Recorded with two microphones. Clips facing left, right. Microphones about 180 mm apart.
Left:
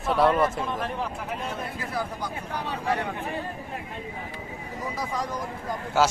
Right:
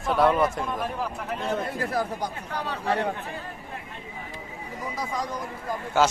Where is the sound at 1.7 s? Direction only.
40° right (ahead or behind).